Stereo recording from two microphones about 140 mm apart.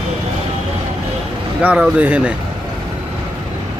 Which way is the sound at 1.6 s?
10° right (ahead or behind).